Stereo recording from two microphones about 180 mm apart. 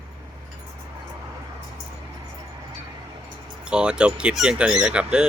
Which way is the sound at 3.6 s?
5° right (ahead or behind).